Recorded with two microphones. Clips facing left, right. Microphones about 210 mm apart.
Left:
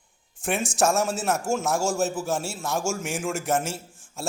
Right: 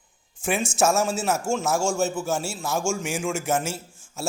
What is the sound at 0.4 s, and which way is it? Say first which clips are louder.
A man's voice: right 1 dB; centre (ahead or behind).